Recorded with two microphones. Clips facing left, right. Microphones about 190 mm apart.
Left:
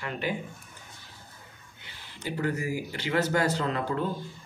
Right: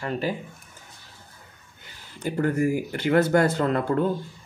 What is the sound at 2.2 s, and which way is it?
Speech, 50° right (ahead or behind).